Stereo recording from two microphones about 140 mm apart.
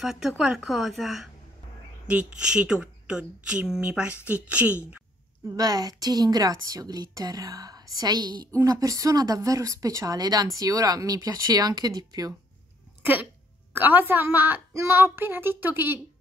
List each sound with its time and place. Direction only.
0.0 s a woman's voice: centre (ahead or behind)
5.5 s speech: 30° right (ahead or behind)
13.0 s a woman's voice: 15° right (ahead or behind)